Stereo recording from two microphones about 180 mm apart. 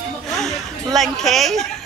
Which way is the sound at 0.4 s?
Centre (ahead or behind).